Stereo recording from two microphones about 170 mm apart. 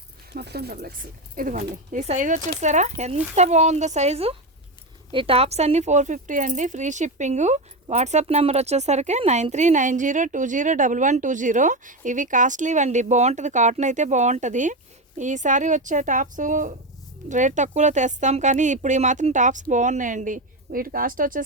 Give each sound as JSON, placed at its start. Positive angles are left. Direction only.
{"t": 0.3, "sound": "speech", "side_deg": -70}
{"t": 1.4, "sound": "speech", "side_deg": -55}